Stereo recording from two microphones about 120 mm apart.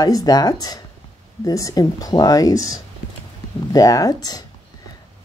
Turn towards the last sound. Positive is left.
turn(degrees=30)  # may be behind; listen again after turning